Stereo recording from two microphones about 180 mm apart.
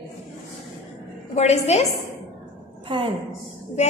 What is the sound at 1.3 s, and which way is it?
Speech, 35° left (ahead or behind).